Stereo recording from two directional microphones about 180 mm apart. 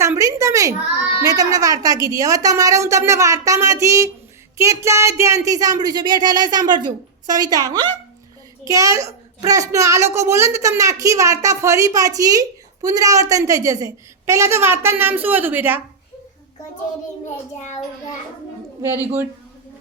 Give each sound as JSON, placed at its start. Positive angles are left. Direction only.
{"t": 0.0, "sound": "a child's voice", "side_deg": -15}